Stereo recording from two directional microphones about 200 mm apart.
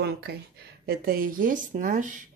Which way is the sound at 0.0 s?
55° right (ahead or behind).